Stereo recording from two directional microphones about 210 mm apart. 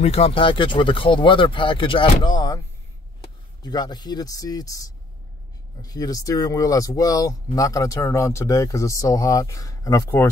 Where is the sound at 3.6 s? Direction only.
20° left (ahead or behind).